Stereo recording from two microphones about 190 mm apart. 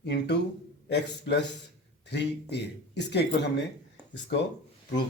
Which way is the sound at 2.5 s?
65° left (ahead or behind).